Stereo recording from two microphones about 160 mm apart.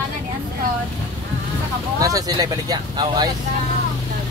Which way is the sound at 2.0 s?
20° right (ahead or behind).